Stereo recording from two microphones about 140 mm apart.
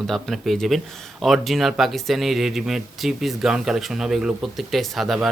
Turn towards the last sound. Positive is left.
turn(degrees=0)  # may be behind; listen again after turning